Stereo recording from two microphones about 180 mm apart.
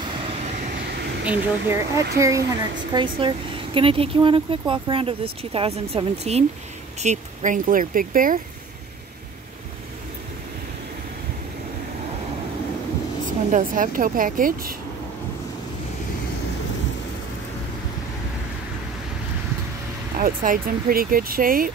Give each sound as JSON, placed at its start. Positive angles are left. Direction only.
{"t": 1.2, "sound": "speech", "side_deg": -5}
{"t": 2.1, "sound": "speech", "side_deg": -15}
{"t": 13.5, "sound": "speech", "side_deg": -45}
{"t": 20.2, "sound": "speech", "side_deg": -50}